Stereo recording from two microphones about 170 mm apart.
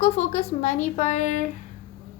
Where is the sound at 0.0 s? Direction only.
45° left (ahead or behind).